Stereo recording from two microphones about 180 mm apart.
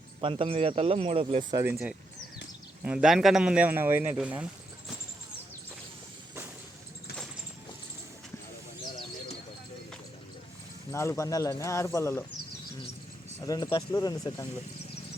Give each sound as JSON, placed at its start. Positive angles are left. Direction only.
{"t": 0.2, "sound": "speech", "side_deg": -30}
{"t": 1.6, "sound": "a man's voice", "side_deg": -10}
{"t": 10.9, "sound": "speech", "side_deg": 15}
{"t": 13.4, "sound": "speech", "side_deg": 20}